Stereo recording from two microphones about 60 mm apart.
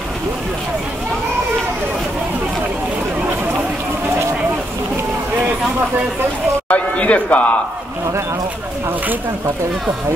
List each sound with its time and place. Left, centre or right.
6.7 s a man's voice: left